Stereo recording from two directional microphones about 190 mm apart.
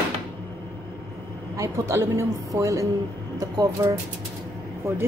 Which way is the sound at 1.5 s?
15° right (ahead or behind).